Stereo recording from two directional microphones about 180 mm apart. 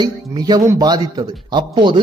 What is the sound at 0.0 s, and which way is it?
Speech, 20° right (ahead or behind).